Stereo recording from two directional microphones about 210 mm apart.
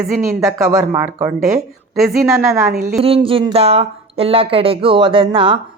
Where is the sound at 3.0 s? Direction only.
25° right (ahead or behind).